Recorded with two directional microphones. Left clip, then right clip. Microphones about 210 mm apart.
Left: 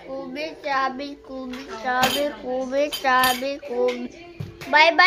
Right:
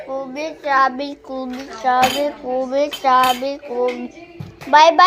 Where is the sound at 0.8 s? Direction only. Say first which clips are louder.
Right 8 dB; 20° right (ahead or behind).